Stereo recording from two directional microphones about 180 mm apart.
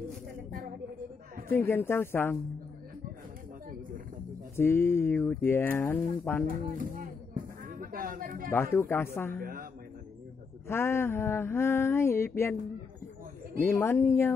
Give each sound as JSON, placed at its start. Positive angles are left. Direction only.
{"t": 0.1, "sound": "a sound", "side_deg": -45}
{"t": 1.5, "sound": "speech", "side_deg": 10}
{"t": 4.6, "sound": "speech", "side_deg": 15}
{"t": 6.4, "sound": "speech", "side_deg": -50}
{"t": 8.7, "sound": "speech", "side_deg": 15}
{"t": 9.4, "sound": "a man's voice", "side_deg": -50}
{"t": 10.7, "sound": "speech", "side_deg": 15}
{"t": 13.7, "sound": "speech", "side_deg": 15}